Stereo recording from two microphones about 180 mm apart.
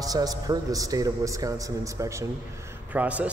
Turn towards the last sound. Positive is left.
turn(degrees=-10)  # may be behind; listen again after turning